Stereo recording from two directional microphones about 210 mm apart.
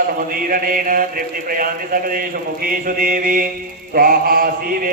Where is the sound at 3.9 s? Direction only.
45° right (ahead or behind).